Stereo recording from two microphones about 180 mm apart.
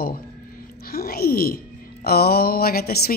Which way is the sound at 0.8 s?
60° left (ahead or behind).